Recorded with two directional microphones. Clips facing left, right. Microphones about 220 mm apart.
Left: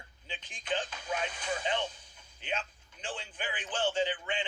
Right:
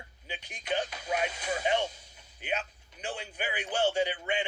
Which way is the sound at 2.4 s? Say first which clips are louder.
Right 3 dB; 10° right (ahead or behind).